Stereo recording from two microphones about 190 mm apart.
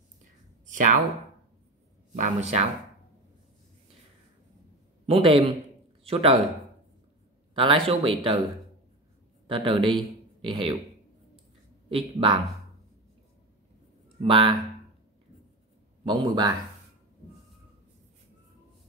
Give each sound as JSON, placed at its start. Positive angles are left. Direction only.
{"t": 0.7, "sound": "a sound", "side_deg": -45}
{"t": 2.1, "sound": "speech", "side_deg": -40}
{"t": 5.0, "sound": "a man's voice", "side_deg": -30}
{"t": 7.5, "sound": "speech", "side_deg": -30}
{"t": 9.8, "sound": "speech", "side_deg": 0}
{"t": 10.4, "sound": "speech", "side_deg": -25}
{"t": 11.9, "sound": "speech", "side_deg": -25}
{"t": 14.2, "sound": "speech", "side_deg": -25}
{"t": 16.1, "sound": "speech", "side_deg": -20}